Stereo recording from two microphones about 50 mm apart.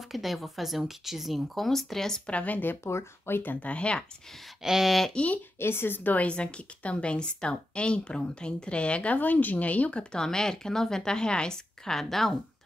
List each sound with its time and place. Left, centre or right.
0.1 s speech: centre
2.2 s speech: left
2.8 s speech: left
3.5 s a woman's voice: left
4.6 s speech: centre
5.1 s a woman's voice: left
5.6 s a woman's voice: left
6.1 s a woman's voice: left
10.1 s speech: centre